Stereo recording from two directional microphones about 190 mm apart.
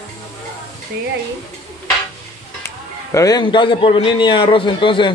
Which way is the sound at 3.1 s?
15° left (ahead or behind).